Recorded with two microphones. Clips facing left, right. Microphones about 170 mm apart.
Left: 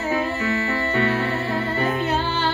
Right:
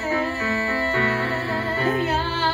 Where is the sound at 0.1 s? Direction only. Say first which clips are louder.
Left 1 dB; 25° left (ahead or behind).